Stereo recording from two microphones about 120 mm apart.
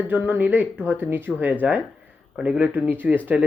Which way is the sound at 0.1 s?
15° right (ahead or behind).